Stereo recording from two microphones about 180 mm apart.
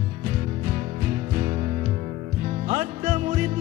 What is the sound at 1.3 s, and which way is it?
Music, 40° right (ahead or behind).